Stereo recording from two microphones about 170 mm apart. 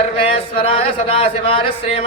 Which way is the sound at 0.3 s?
35° left (ahead or behind).